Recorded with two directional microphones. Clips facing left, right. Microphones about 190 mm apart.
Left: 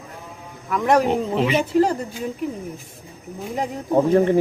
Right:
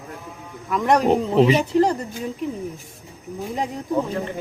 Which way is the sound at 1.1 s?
35° right (ahead or behind).